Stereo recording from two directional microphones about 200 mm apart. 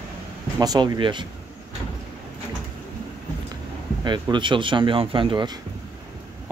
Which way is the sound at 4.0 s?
20° right (ahead or behind).